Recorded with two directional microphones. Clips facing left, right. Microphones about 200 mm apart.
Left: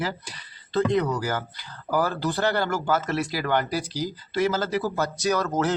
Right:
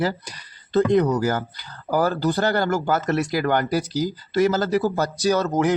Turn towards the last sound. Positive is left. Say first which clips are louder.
# right 4 dB
turn(degrees=-15)  # may be behind; listen again after turning